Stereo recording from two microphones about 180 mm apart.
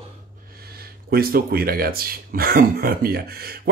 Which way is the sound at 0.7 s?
55° right (ahead or behind).